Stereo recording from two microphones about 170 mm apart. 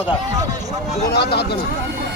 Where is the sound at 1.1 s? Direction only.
70° left (ahead or behind).